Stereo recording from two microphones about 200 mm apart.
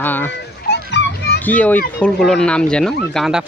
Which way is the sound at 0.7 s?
60° left (ahead or behind).